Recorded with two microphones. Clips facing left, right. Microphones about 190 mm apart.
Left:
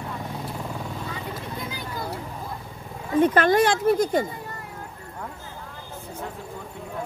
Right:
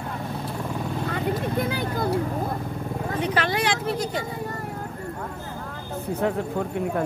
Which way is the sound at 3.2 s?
50° left (ahead or behind).